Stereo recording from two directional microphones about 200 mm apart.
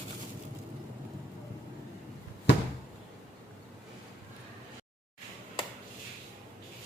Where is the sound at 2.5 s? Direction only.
60° left (ahead or behind).